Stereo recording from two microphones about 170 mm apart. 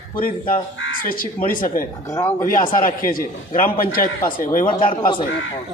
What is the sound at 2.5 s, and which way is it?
A man's voice, 50° left (ahead or behind).